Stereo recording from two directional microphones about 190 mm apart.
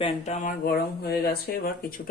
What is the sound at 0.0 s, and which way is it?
Speech, 40° left (ahead or behind).